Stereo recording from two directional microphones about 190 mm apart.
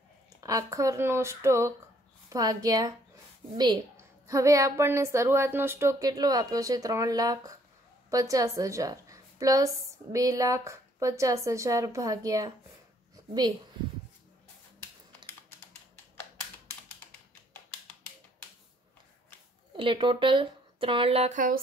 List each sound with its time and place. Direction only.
0.4 s a woman's voice: 15° right (ahead or behind)
19.8 s a woman's voice: 25° right (ahead or behind); by 21.5 s 40° right (ahead or behind)